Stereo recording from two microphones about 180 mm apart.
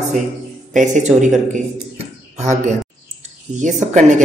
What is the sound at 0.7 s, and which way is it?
A man's voice, 45° right (ahead or behind).